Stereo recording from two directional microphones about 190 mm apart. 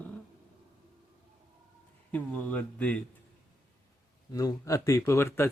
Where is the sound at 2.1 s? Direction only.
10° left (ahead or behind).